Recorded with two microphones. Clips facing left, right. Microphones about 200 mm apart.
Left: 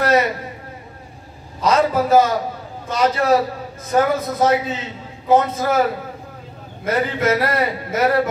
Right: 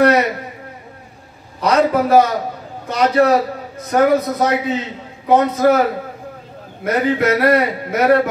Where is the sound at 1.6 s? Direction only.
65° right (ahead or behind).